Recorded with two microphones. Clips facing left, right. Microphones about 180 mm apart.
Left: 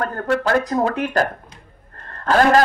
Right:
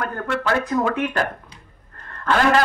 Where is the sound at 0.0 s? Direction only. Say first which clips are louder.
Left 4 dB; 40° left (ahead or behind).